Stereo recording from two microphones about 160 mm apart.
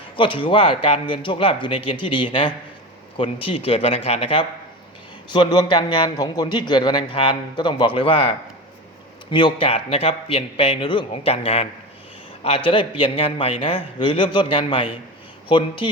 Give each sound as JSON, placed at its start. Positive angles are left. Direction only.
{"t": 0.2, "sound": "a man's voice", "side_deg": 35}